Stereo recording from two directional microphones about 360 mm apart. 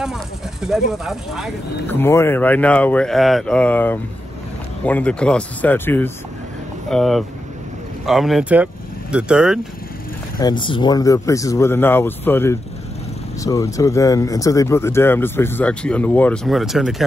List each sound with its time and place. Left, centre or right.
0.0 s speech: centre
10.4 s speech: centre